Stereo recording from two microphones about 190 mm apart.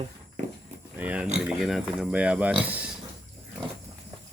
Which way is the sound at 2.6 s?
5° right (ahead or behind).